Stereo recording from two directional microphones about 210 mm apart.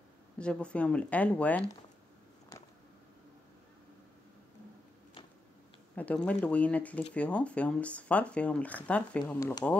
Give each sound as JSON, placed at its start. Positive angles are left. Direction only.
{"t": 0.4, "sound": "speech", "side_deg": 5}
{"t": 5.9, "sound": "speech", "side_deg": 5}